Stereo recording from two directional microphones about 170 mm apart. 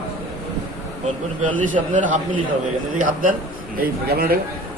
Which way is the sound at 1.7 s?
50° right (ahead or behind).